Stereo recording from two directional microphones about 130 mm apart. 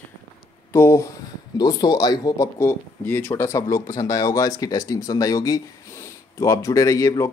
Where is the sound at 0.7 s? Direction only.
20° left (ahead or behind).